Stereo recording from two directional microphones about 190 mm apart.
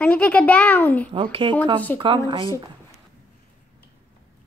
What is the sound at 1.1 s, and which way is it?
Speech, 25° right (ahead or behind).